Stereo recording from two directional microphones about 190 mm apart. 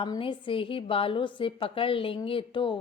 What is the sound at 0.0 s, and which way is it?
A woman's voice, 25° left (ahead or behind).